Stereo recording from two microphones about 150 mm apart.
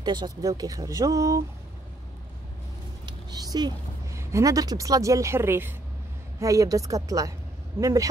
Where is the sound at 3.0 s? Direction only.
25° right (ahead or behind).